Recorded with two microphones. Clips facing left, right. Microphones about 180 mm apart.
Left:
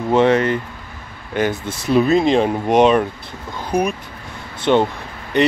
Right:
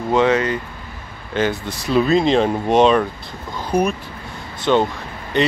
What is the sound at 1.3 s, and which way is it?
Speech, 15° left (ahead or behind).